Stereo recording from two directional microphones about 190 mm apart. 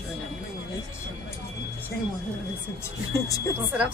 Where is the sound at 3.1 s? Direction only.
15° left (ahead or behind).